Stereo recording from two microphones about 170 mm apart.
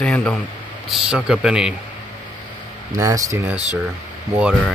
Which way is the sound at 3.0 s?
20° right (ahead or behind).